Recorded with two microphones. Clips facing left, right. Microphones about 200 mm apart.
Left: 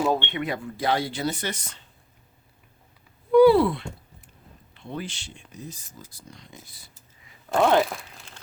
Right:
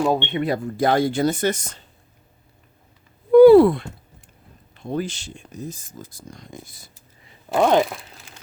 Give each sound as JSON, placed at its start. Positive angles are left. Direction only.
{"t": 0.0, "sound": "speech", "side_deg": -15}
{"t": 0.3, "sound": "speech", "side_deg": -30}
{"t": 3.3, "sound": "a sound", "side_deg": -50}
{"t": 4.7, "sound": "speech", "side_deg": -45}
{"t": 7.5, "sound": "speech", "side_deg": -15}